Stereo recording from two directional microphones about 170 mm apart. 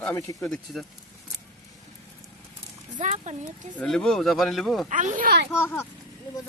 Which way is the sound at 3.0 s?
40° right (ahead or behind).